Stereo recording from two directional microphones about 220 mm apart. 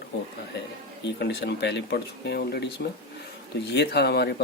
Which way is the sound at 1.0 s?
50° left (ahead or behind).